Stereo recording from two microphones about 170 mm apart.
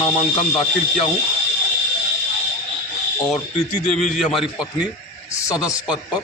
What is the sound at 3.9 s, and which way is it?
Speech, centre (ahead or behind).